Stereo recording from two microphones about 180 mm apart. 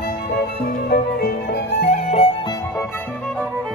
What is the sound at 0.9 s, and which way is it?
Music, 60° left (ahead or behind).